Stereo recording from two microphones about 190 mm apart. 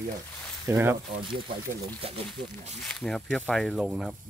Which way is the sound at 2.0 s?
30° right (ahead or behind).